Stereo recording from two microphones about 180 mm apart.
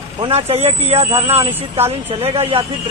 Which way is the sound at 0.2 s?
30° right (ahead or behind).